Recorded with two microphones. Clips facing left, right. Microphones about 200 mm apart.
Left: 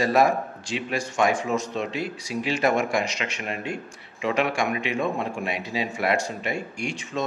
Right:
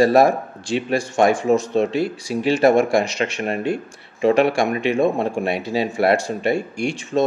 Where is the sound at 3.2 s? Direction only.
50° right (ahead or behind).